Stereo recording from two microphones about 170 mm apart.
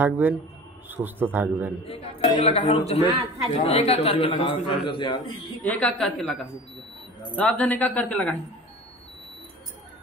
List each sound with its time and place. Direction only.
0.0 s a man's voice: 10° right (ahead or behind)
1.9 s speech: 35° left (ahead or behind)
5.6 s a woman's voice: 10° left (ahead or behind)